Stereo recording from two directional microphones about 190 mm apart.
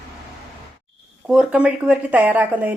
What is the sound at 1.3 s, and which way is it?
Speech, 5° right (ahead or behind).